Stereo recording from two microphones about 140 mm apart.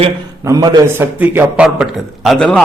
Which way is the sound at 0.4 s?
25° right (ahead or behind).